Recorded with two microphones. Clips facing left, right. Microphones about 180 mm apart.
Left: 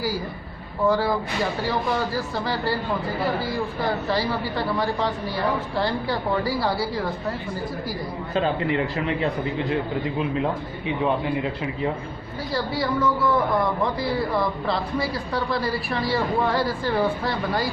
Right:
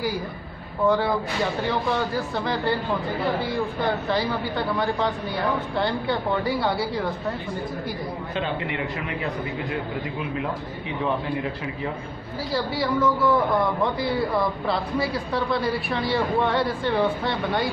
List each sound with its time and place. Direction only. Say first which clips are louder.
0.8 s a man's voice: even; 5° left (ahead or behind)
8.4 s a man's voice: left 6 dB; 35° left (ahead or behind)
12.5 s a man's voice: even; centre (ahead or behind)